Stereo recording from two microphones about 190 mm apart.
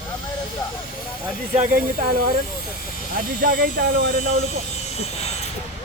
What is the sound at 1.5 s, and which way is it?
Speech, 40° right (ahead or behind).